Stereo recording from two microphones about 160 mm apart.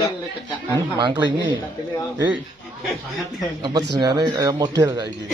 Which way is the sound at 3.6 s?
25° right (ahead or behind).